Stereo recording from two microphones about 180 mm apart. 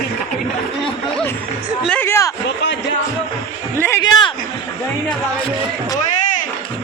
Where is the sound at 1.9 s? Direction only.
10° left (ahead or behind).